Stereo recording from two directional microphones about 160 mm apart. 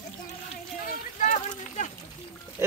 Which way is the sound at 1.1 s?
50° left (ahead or behind).